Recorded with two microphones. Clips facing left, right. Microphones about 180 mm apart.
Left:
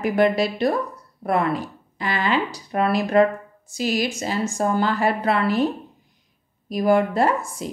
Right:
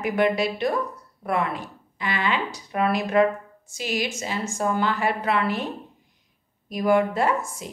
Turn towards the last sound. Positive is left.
turn(degrees=35)  # may be behind; listen again after turning